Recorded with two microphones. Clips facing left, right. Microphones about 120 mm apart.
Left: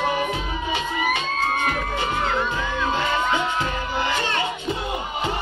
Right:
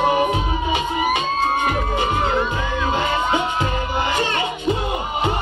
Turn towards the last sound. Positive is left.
turn(degrees=-15)  # may be behind; listen again after turning